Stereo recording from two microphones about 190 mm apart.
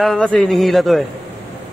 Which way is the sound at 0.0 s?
5° left (ahead or behind).